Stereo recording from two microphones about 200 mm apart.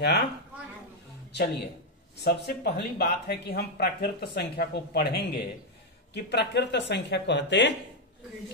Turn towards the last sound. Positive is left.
turn(degrees=60)  # may be behind; listen again after turning